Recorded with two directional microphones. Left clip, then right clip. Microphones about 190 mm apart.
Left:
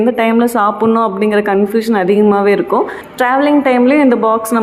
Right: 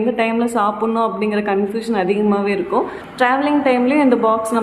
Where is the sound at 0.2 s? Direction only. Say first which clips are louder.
Left 5 dB; 30° left (ahead or behind).